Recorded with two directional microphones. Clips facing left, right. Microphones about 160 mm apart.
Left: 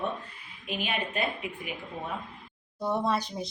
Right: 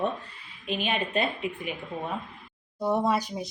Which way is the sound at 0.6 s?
25° right (ahead or behind).